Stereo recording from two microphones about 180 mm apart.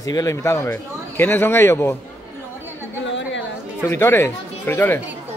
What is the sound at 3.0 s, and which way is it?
Chatter, 90° left.